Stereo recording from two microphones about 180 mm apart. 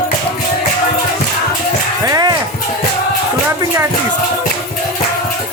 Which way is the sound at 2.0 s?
20° right (ahead or behind).